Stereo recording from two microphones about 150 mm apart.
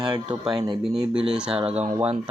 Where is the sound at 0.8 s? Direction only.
5° right (ahead or behind).